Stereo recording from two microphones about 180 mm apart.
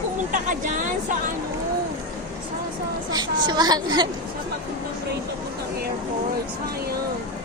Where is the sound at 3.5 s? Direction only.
20° right (ahead or behind).